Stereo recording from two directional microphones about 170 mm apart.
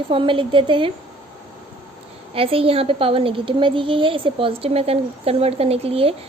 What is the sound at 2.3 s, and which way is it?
A child's voice, 35° right (ahead or behind).